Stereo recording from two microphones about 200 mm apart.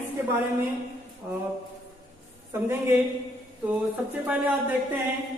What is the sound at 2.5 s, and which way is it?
Speech, 10° right (ahead or behind).